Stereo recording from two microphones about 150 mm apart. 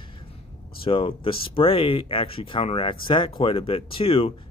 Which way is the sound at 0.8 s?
35° left (ahead or behind).